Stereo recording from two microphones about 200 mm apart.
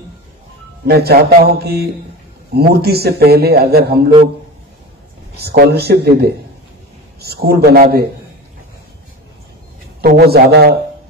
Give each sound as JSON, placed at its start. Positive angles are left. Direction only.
{"t": 0.8, "sound": "a man's voice", "side_deg": -50}
{"t": 5.4, "sound": "a man's voice", "side_deg": -50}
{"t": 10.0, "sound": "a man's voice", "side_deg": -50}